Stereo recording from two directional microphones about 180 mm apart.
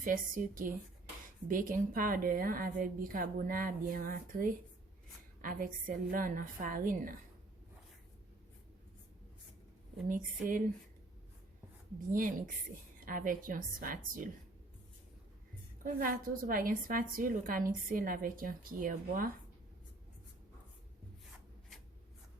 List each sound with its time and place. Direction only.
0.0 s a woman's voice: 50° right (ahead or behind)
10.1 s a woman's voice: 50° right (ahead or behind)
12.1 s a woman's voice: 50° right (ahead or behind)
15.8 s a woman's voice: 55° right (ahead or behind)